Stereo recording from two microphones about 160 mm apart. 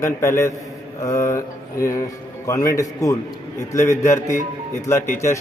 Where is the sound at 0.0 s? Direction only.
15° left (ahead or behind).